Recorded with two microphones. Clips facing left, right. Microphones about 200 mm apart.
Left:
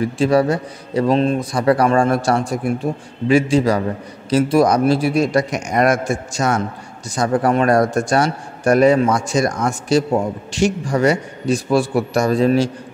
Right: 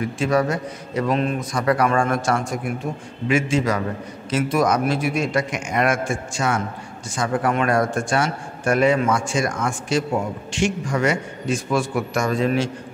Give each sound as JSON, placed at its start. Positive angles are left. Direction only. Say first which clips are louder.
{"t": 0.0, "sound": "a man's voice", "louder": "left 5 dB", "side_deg": 30}